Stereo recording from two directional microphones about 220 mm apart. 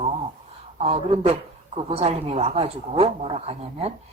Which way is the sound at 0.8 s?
30° right (ahead or behind).